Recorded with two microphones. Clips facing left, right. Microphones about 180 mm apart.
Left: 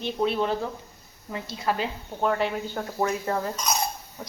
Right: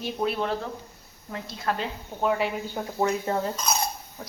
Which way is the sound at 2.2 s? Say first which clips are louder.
Even; 5° right (ahead or behind).